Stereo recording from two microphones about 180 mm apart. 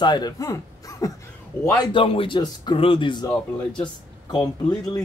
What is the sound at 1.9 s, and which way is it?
Speech, 30° left (ahead or behind).